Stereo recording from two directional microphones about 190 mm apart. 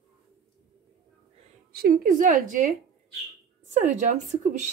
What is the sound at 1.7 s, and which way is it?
Speech, 55° right (ahead or behind).